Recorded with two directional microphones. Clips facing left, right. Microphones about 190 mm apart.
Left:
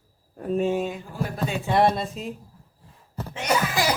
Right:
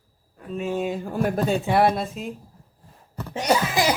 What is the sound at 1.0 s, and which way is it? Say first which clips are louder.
Speech: right 7 dB; 55° right (ahead or behind).